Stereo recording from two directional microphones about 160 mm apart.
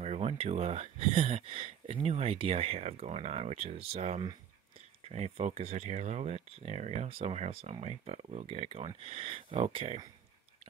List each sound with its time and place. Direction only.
0.0 s speech: 40° right (ahead or behind)